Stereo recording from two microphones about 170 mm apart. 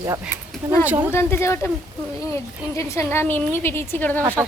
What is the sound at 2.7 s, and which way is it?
Speech, 15° left (ahead or behind).